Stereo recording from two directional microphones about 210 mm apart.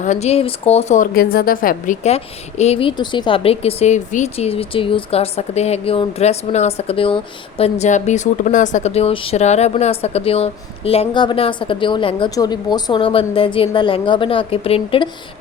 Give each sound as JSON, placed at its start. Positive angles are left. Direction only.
{"t": 0.0, "sound": "a woman's voice", "side_deg": 35}